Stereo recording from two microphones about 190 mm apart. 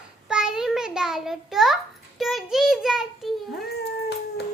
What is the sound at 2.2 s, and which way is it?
Child singing, centre (ahead or behind).